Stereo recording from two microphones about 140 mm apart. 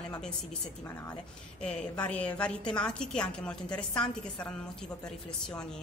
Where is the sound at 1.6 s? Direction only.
5° left (ahead or behind).